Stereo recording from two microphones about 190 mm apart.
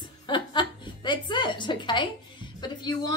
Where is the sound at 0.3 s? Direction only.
25° left (ahead or behind).